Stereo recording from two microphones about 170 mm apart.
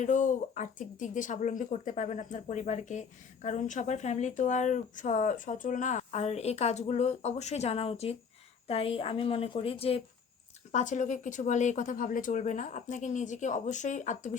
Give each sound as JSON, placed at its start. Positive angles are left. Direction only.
{"t": 0.0, "sound": "a woman's voice", "side_deg": 45}
{"t": 10.7, "sound": "speech", "side_deg": 45}